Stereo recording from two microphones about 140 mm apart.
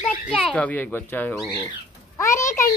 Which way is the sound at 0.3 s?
10° left (ahead or behind).